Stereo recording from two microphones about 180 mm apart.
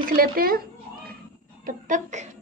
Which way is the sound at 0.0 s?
55° right (ahead or behind).